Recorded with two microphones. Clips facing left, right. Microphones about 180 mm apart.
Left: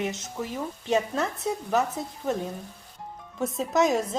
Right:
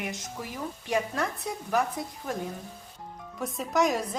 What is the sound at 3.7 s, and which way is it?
Speech, centre (ahead or behind).